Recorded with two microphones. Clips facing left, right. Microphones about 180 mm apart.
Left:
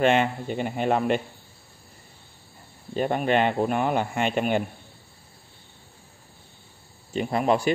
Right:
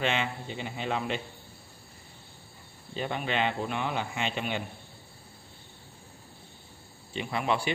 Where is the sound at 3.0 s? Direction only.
50° left (ahead or behind).